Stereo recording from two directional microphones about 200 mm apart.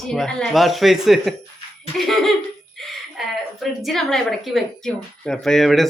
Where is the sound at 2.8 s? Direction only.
Centre (ahead or behind).